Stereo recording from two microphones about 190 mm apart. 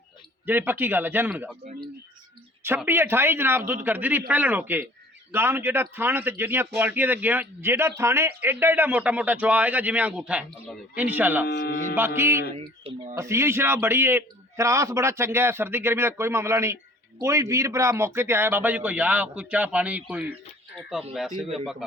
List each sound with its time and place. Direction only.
0.4 s speech: 10° right (ahead or behind)
2.6 s speech: 10° right (ahead or behind)
11.4 s speech: 55° left (ahead or behind)
11.9 s a man's voice: 10° right (ahead or behind)